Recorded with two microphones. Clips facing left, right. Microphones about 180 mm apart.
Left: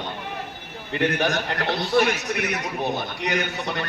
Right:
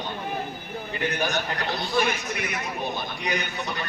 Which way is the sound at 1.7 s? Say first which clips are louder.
Left 5 dB; 70° left (ahead or behind).